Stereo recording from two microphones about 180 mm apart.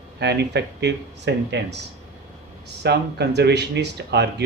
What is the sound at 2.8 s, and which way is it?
Speech, 70° right (ahead or behind).